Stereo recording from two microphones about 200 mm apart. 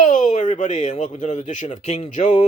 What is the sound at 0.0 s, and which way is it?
Speech, 35° left (ahead or behind).